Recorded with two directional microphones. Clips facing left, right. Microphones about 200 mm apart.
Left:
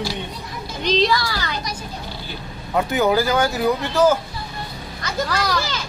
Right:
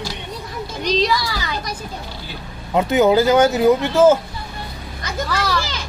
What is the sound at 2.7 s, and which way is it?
Speech, 20° right (ahead or behind).